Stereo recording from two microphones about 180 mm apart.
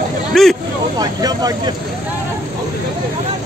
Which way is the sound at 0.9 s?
20° right (ahead or behind).